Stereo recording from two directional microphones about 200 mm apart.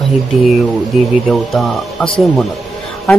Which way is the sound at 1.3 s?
Centre (ahead or behind).